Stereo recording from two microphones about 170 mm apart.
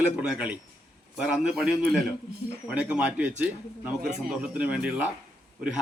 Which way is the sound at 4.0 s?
55° right (ahead or behind).